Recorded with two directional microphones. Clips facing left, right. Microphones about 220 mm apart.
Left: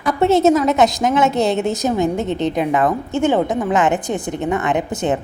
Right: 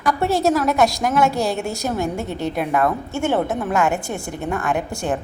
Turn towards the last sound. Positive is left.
turn(degrees=20)  # may be behind; listen again after turning